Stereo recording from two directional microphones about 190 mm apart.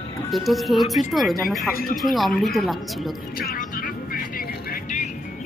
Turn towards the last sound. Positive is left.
turn(degrees=50)  # may be behind; listen again after turning